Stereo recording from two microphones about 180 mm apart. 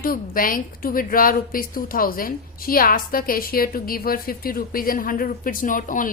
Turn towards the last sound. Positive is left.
turn(degrees=50)  # may be behind; listen again after turning